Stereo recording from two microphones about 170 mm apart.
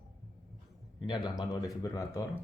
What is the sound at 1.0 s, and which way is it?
Speech, 25° left (ahead or behind).